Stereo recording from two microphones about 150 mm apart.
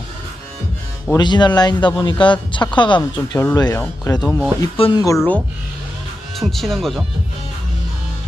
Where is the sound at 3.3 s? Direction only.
20° left (ahead or behind).